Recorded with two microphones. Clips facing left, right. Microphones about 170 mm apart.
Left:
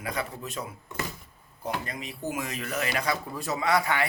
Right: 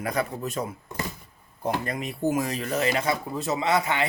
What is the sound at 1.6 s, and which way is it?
Speech, 55° right (ahead or behind).